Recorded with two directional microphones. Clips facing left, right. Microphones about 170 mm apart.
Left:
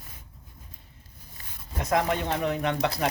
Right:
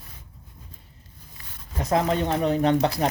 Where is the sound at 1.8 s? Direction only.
35° right (ahead or behind).